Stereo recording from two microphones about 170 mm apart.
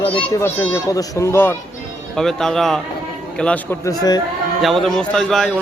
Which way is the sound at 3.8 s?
20° left (ahead or behind).